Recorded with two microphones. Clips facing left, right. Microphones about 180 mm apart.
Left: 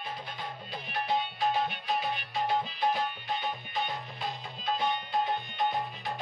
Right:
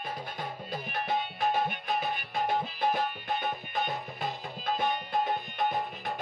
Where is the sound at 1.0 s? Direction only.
50° right (ahead or behind).